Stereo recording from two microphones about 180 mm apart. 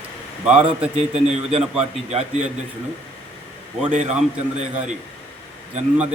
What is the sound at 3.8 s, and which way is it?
Speech, 40° right (ahead or behind).